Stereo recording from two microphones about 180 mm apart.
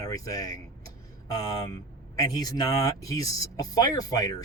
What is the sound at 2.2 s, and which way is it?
Speech, 20° left (ahead or behind).